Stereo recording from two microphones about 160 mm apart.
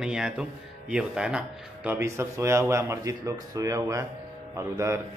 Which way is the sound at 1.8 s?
15° right (ahead or behind).